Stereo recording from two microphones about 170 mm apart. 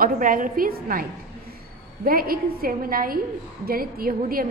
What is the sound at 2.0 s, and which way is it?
A woman's voice, 60° right (ahead or behind).